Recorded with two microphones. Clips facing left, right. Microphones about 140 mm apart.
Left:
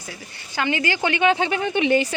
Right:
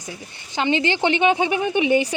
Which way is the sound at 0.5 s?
20° right (ahead or behind).